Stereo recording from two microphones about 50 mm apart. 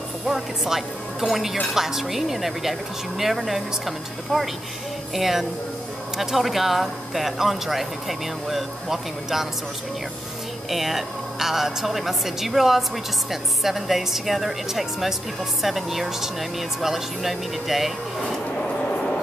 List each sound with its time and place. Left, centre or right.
0.3 s speech: centre
10.7 s speech: centre
18.7 s vehicle: centre